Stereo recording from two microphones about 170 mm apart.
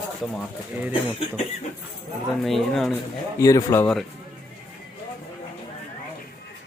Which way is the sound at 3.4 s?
20° left (ahead or behind).